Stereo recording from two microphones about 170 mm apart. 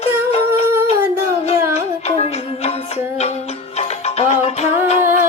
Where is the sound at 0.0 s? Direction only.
40° left (ahead or behind).